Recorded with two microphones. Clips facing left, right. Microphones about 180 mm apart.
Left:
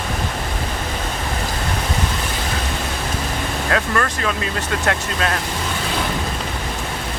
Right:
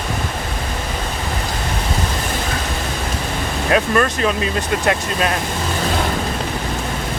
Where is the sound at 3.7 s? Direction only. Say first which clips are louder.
Right 5 dB; 20° right (ahead or behind).